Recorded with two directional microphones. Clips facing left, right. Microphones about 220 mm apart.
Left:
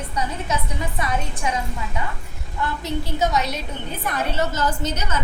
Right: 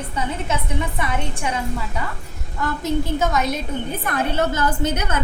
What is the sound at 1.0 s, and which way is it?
Speech, 25° right (ahead or behind).